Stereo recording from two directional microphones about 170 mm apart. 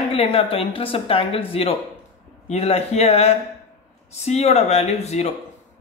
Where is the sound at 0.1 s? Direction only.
35° left (ahead or behind).